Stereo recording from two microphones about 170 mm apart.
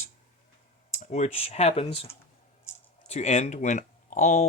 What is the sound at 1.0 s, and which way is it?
Speech, 40° left (ahead or behind).